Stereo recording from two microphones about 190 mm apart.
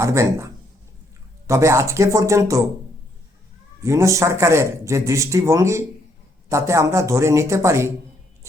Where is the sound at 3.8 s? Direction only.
15° right (ahead or behind).